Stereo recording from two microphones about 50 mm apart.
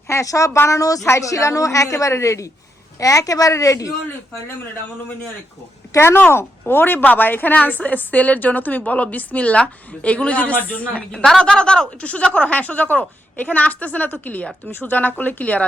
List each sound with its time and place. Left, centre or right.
0.1 s a woman's voice: left
5.9 s speech: left
6.7 s a woman's voice: left
11.1 s speech: centre; by 14.4 s left
14.7 s speech: left
15.2 s a woman's voice: left